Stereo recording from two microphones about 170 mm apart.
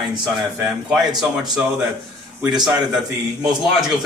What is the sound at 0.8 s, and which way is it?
Speech, centre (ahead or behind).